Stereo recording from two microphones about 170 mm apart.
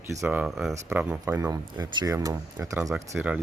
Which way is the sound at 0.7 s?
10° right (ahead or behind).